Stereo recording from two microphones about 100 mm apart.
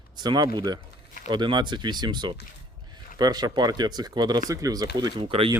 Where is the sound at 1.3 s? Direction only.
50° right (ahead or behind).